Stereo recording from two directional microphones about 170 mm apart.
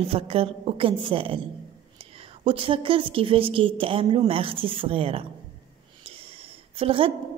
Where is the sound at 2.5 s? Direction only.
30° right (ahead or behind).